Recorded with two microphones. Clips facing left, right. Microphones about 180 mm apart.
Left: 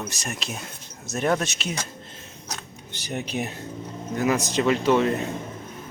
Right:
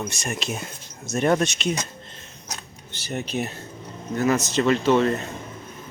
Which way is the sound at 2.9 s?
15° left (ahead or behind).